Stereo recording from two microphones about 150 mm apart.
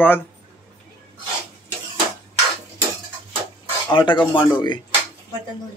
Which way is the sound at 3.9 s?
30° left (ahead or behind).